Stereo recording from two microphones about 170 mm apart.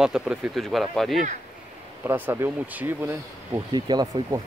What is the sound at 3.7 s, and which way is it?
Speech, 25° right (ahead or behind).